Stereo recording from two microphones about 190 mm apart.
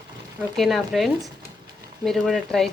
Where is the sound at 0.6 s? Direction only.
Centre (ahead or behind).